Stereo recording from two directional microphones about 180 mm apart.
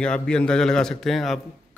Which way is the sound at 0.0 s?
5° left (ahead or behind).